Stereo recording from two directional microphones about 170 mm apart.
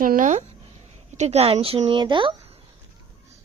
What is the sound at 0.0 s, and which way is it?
A woman's voice, 50° right (ahead or behind).